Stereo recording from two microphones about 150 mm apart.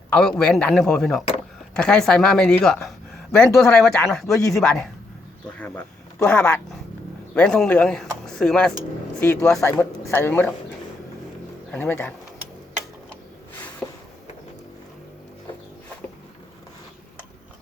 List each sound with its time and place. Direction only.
0.1 s a man's voice: 5° left (ahead or behind)
9.6 s a man's voice: 20° left (ahead or behind)
11.7 s a man's voice: 15° left (ahead or behind)
13.8 s a sound: 5° left (ahead or behind)